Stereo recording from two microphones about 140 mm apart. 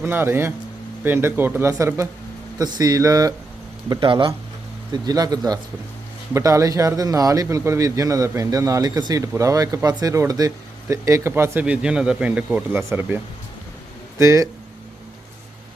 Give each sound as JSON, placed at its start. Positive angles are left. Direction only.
{"t": 0.0, "sound": "a man's voice", "side_deg": -15}
{"t": 3.8, "sound": "a man's voice", "side_deg": -35}
{"t": 11.6, "sound": "speech", "side_deg": -5}
{"t": 14.2, "sound": "a man's voice", "side_deg": -20}